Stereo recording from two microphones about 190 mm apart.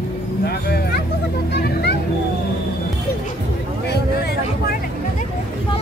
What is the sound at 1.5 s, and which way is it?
Vehicle, 60° left (ahead or behind).